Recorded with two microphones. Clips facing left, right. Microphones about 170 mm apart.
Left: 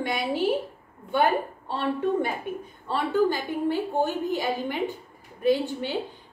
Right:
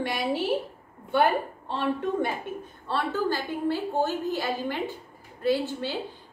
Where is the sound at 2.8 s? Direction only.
15° left (ahead or behind).